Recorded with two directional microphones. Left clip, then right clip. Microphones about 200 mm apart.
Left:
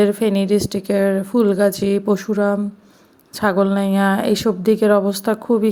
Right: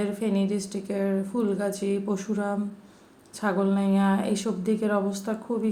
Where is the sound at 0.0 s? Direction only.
45° left (ahead or behind).